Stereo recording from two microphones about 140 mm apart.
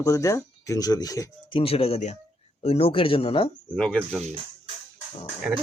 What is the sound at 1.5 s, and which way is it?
Speech, 45° left (ahead or behind).